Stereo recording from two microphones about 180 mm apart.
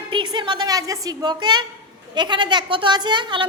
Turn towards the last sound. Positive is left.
turn(degrees=-25)  # may be behind; listen again after turning